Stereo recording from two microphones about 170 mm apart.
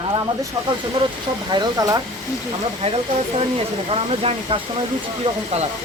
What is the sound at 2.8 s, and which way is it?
Speech, 35° right (ahead or behind).